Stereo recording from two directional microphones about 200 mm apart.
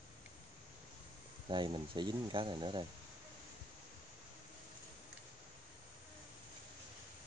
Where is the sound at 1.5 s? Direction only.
25° right (ahead or behind).